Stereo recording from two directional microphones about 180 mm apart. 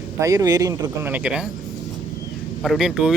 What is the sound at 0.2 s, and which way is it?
Speech, 20° right (ahead or behind).